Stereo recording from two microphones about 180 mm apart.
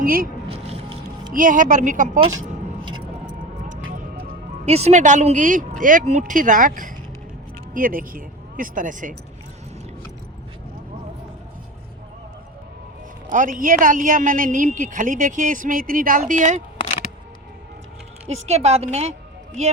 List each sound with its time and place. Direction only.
0.0 s speech: 55° right (ahead or behind)
0.5 s music: 30° right (ahead or behind)
1.3 s a man's voice: 50° right (ahead or behind)
3.2 s music: 45° right (ahead or behind)
4.6 s a man's voice: 35° right (ahead or behind)
13.3 s a man's voice: 50° right (ahead or behind)
18.4 s a woman's voice: 35° right (ahead or behind)